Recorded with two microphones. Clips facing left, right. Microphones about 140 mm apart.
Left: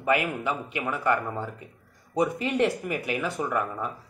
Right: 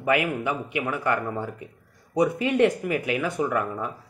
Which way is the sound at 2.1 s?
15° right (ahead or behind).